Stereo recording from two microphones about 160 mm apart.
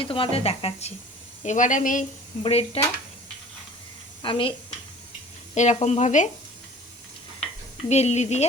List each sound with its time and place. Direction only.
0.0 s speech: 35° left (ahead or behind)
1.5 s speech: 50° left (ahead or behind)
2.4 s speech: 40° left (ahead or behind)
4.2 s speech: 35° left (ahead or behind)
5.5 s speech: 45° left (ahead or behind)
7.9 s speech: 45° left (ahead or behind)